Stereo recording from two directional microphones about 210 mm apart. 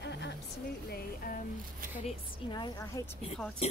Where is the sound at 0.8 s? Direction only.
45° left (ahead or behind).